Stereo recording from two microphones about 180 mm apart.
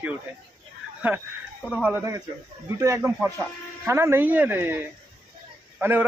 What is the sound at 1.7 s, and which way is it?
A man's voice, 10° right (ahead or behind).